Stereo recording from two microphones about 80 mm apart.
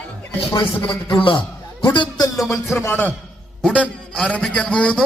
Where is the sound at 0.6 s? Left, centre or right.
Left.